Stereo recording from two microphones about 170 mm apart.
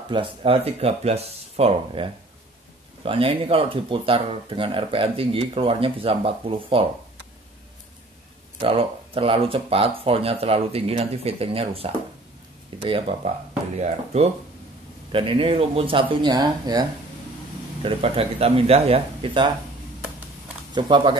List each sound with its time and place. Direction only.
0.1 s speech: 30° right (ahead or behind)
3.1 s speech: 35° right (ahead or behind)
8.5 s speech: 30° right (ahead or behind)
17.8 s speech: 35° right (ahead or behind)
20.7 s speech: 25° right (ahead or behind)